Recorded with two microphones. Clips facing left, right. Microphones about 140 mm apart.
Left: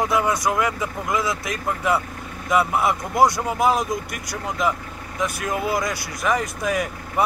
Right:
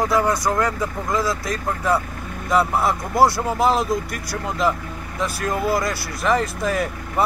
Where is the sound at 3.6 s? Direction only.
15° left (ahead or behind).